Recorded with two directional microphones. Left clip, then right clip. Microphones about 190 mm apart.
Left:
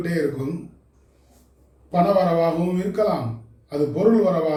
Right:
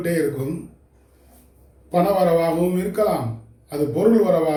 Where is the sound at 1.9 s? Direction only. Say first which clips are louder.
Right 1 dB; 15° right (ahead or behind).